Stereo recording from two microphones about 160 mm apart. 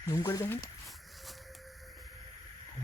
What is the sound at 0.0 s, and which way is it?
Speech, 20° left (ahead or behind).